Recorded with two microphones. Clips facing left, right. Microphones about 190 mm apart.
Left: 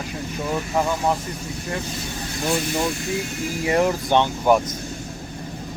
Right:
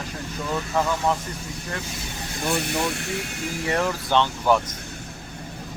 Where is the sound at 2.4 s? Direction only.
60° right (ahead or behind).